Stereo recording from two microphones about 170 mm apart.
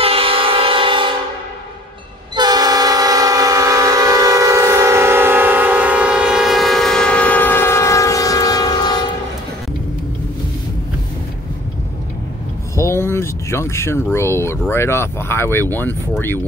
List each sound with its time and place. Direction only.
0.0 s train: 35° right (ahead or behind)
2.3 s train: 25° right (ahead or behind); by 9.0 s 25° left (ahead or behind)
12.7 s a sound: 15° left (ahead or behind)
14.7 s speech: 15° left (ahead or behind)